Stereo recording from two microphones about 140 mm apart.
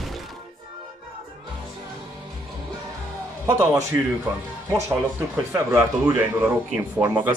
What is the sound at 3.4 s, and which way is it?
A man's voice, 20° right (ahead or behind).